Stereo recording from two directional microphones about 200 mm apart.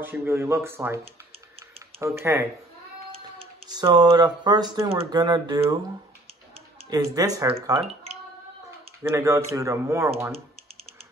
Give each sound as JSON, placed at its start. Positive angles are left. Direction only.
{"t": 0.0, "sound": "a man's voice", "side_deg": -10}
{"t": 3.1, "sound": "speech", "side_deg": -25}
{"t": 6.9, "sound": "speech", "side_deg": -20}
{"t": 9.0, "sound": "a man's voice", "side_deg": -15}